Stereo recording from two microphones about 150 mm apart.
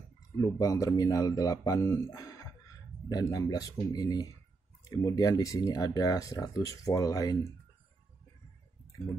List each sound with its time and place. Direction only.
0.4 s speech: 25° left (ahead or behind)